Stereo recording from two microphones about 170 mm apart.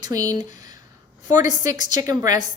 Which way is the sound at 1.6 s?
25° right (ahead or behind).